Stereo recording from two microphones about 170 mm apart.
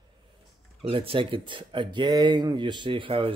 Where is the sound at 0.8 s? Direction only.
30° right (ahead or behind).